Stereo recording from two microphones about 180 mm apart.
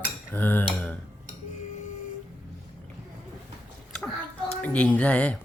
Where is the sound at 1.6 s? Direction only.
45° left (ahead or behind).